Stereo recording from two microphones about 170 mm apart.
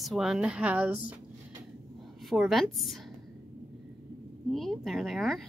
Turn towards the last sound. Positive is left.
turn(degrees=0)  # may be behind; listen again after turning